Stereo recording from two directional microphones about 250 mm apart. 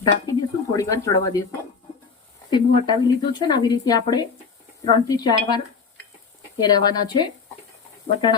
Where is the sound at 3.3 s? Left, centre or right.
Centre.